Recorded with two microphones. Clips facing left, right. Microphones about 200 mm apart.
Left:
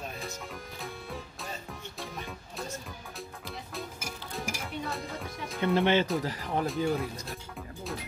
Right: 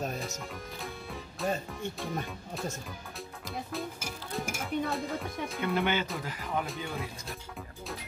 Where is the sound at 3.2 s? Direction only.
Centre (ahead or behind).